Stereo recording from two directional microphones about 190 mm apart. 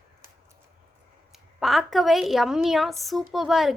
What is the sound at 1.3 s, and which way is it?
A woman's voice, centre (ahead or behind).